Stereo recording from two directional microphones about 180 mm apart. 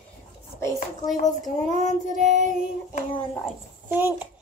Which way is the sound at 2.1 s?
40° right (ahead or behind).